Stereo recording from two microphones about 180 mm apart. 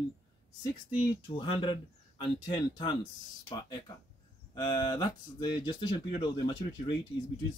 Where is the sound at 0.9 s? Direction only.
25° left (ahead or behind).